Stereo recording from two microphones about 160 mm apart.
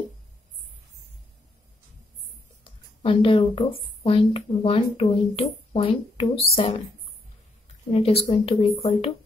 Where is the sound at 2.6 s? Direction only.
35° left (ahead or behind).